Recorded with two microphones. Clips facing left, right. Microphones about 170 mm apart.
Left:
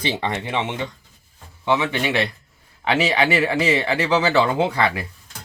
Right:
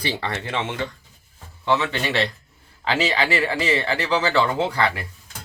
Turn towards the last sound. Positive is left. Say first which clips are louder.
# left 2 dB
turn(degrees=25)  # may be behind; listen again after turning